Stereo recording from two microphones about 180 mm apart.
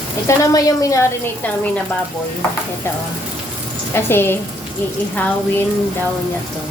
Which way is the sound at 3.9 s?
10° left (ahead or behind).